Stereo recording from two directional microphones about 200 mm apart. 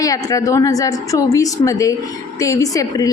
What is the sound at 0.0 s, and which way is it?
A woman's voice, 15° left (ahead or behind).